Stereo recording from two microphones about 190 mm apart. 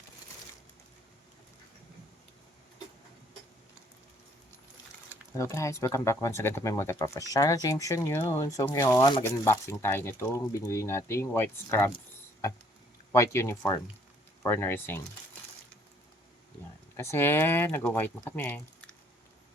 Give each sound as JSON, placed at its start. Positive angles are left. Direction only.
{"t": 5.4, "sound": "speech", "side_deg": 15}
{"t": 13.1, "sound": "speech", "side_deg": 15}
{"t": 17.0, "sound": "speech", "side_deg": 15}